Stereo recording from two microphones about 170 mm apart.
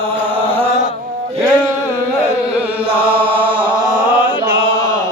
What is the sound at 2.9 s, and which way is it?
Chant, 30° right (ahead or behind).